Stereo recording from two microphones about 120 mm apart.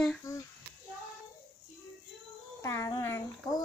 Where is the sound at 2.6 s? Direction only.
25° left (ahead or behind).